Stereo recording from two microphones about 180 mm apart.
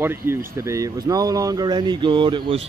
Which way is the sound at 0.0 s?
10° right (ahead or behind).